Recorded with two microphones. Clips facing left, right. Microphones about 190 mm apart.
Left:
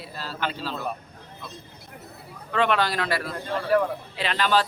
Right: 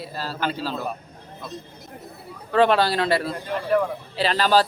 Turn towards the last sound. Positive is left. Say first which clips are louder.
# right 4 dB
turn(degrees=-35)  # may be behind; listen again after turning